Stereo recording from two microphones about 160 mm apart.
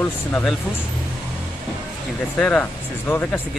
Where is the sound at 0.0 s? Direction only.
10° left (ahead or behind).